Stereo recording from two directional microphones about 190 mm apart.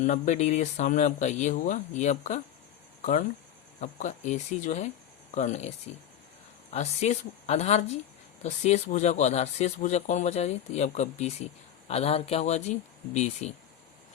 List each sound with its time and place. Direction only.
0.0 s speech: 40° left (ahead or behind)
6.7 s speech: 35° left (ahead or behind)